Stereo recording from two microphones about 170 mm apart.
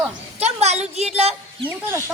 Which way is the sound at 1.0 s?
40° right (ahead or behind).